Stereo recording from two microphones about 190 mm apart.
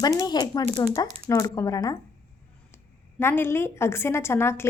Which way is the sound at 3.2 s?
10° left (ahead or behind).